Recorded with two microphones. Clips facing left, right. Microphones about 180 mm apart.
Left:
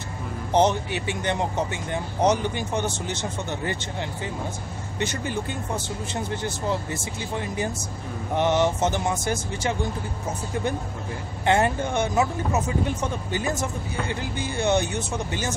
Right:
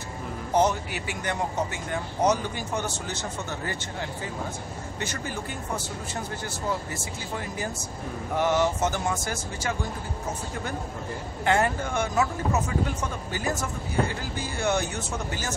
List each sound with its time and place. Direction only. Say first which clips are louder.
0.5 s speech: left 3 dB; 25° left (ahead or behind)
5.0 s speech: left 6 dB; 20° left (ahead or behind)
6.4 s speech: left 3 dB; 20° left (ahead or behind)
11.4 s speech: left 3 dB; 20° left (ahead or behind)